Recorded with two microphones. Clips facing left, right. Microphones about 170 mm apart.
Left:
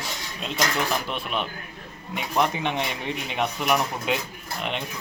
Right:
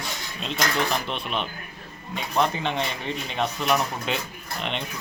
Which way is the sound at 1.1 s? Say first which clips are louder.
Even; 5° left (ahead or behind).